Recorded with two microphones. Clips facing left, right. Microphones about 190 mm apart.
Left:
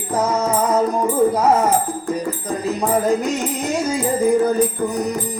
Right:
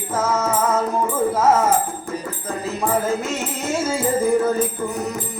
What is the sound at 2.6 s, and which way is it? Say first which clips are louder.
Music: left 3 dB; 15° left (ahead or behind).